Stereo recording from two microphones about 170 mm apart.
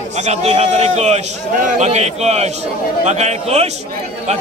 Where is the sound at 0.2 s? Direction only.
40° right (ahead or behind).